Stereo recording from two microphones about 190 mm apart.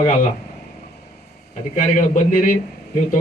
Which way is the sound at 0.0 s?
40° left (ahead or behind).